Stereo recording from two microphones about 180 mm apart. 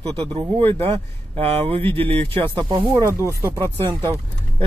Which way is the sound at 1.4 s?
35° right (ahead or behind).